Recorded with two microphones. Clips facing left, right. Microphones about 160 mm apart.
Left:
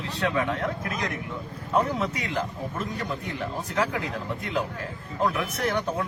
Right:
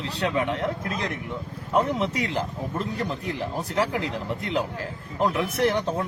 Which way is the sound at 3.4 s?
30° right (ahead or behind).